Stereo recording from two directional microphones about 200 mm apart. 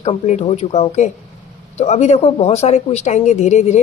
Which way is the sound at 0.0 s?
35° left (ahead or behind).